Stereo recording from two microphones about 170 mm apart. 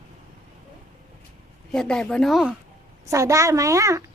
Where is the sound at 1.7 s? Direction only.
5° left (ahead or behind).